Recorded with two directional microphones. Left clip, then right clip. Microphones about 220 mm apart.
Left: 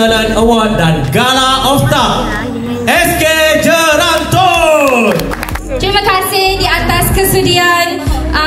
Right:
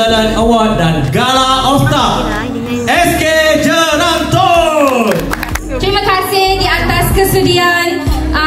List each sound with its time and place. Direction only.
0.0 s music: 50° left (ahead or behind)
5.9 s music: 40° left (ahead or behind)